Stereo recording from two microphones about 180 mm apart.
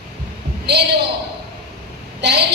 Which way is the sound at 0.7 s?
65° right (ahead or behind).